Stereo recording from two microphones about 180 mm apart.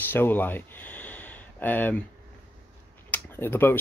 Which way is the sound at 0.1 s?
10° left (ahead or behind).